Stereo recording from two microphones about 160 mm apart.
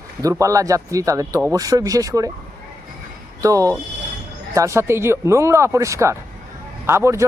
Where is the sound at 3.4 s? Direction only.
20° right (ahead or behind).